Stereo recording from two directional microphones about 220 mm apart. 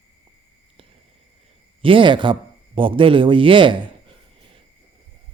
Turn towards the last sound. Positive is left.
turn(degrees=-20)  # may be behind; listen again after turning